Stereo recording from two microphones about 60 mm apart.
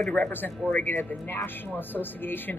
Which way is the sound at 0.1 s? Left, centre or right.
Left.